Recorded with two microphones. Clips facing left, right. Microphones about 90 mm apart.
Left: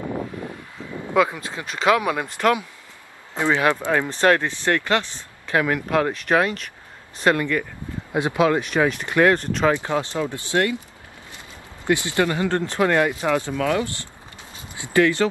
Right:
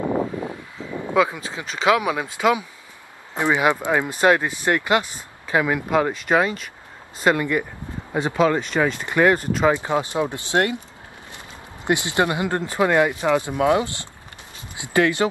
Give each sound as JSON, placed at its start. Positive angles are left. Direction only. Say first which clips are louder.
{"t": 0.0, "sound": "a sound", "louder": "right 6 dB", "side_deg": -70}
{"t": 0.4, "sound": "vehicle", "louder": "right 3 dB", "side_deg": -20}
{"t": 1.1, "sound": "speech", "louder": "even", "side_deg": -5}
{"t": 8.1, "sound": "speech", "louder": "even", "side_deg": 5}
{"t": 9.0, "sound": "speech", "louder": "right 1 dB", "side_deg": -10}
{"t": 11.8, "sound": "speech", "louder": "even", "side_deg": -20}